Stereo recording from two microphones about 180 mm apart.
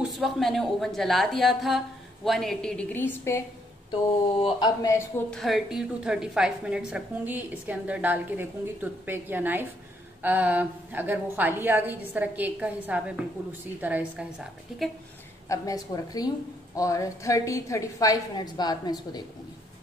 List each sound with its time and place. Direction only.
0.0 s a woman's voice: centre (ahead or behind)
3.9 s a woman's voice: 25° left (ahead or behind)
5.3 s a woman's voice: centre (ahead or behind)
15.4 s a woman's voice: 20° left (ahead or behind)